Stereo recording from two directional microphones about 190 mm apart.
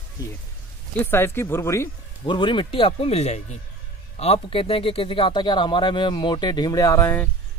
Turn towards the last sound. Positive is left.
turn(degrees=10)  # may be behind; listen again after turning